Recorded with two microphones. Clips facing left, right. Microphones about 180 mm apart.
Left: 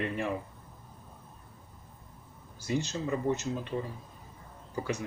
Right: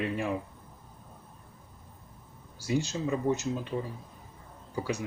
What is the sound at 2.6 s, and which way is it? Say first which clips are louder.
Speech: right 2 dB; 10° right (ahead or behind).